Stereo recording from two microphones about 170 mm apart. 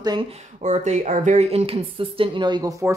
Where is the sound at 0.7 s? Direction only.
45° right (ahead or behind).